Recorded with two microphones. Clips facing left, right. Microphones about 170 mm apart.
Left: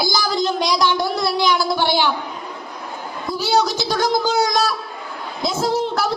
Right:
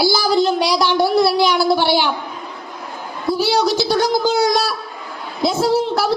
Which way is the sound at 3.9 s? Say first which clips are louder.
Even; 15° right (ahead or behind).